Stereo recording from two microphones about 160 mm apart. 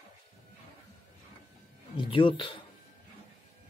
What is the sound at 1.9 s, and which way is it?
Speech, 30° left (ahead or behind).